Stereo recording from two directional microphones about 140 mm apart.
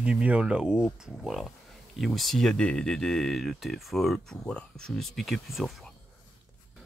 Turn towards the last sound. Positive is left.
turn(degrees=0)  # may be behind; listen again after turning